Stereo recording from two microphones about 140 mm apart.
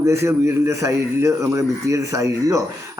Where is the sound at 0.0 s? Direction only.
20° right (ahead or behind).